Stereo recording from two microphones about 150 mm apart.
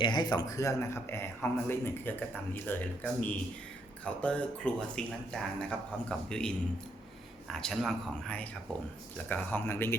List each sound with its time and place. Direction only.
0.0 s speech: 30° left (ahead or behind); by 9.9 s 15° left (ahead or behind)